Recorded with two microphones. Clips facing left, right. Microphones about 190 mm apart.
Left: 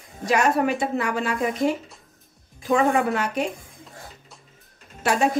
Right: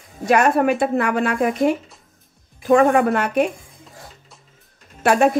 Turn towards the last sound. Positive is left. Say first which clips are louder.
# right 6 dB
turn(degrees=-60)  # may be behind; listen again after turning